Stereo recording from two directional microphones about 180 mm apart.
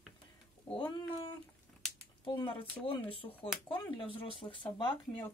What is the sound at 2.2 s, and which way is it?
Speech, 30° left (ahead or behind).